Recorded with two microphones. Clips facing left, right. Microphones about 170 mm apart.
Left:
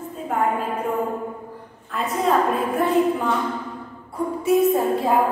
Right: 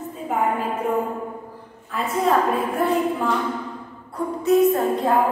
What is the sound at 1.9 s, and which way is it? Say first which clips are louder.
A woman's voice: even; centre (ahead or behind).